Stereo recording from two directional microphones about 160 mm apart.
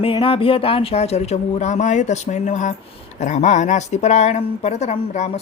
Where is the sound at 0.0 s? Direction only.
35° left (ahead or behind).